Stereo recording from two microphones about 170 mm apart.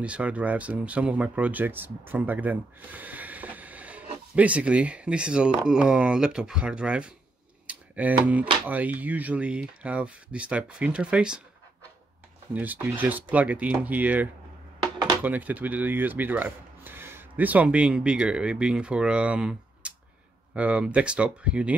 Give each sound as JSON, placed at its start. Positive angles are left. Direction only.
{"t": 0.0, "sound": "speech", "side_deg": -5}
{"t": 7.6, "sound": "a sound", "side_deg": -10}
{"t": 8.6, "sound": "speech", "side_deg": -10}
{"t": 12.5, "sound": "speech", "side_deg": -10}
{"t": 14.8, "sound": "a sound", "side_deg": -25}
{"t": 15.2, "sound": "speech", "side_deg": -10}